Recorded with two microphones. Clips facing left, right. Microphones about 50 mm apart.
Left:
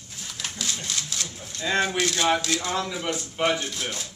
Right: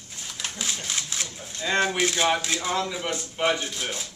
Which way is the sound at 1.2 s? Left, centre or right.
Centre.